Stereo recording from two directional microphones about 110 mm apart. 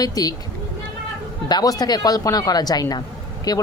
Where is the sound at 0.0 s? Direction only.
35° left (ahead or behind).